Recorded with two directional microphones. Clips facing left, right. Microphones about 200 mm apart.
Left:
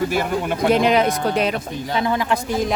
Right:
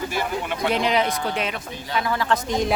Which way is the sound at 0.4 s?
50° left (ahead or behind).